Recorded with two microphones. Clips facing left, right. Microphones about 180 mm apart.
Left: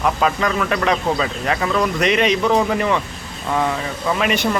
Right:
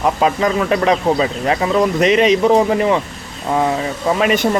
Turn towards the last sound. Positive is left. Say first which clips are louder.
# right 4 dB
turn(degrees=-30)  # may be behind; listen again after turning